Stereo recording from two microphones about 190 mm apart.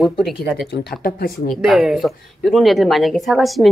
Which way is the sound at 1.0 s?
50° left (ahead or behind).